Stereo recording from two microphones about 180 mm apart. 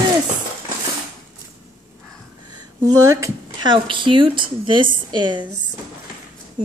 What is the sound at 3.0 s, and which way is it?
Speech, 15° right (ahead or behind).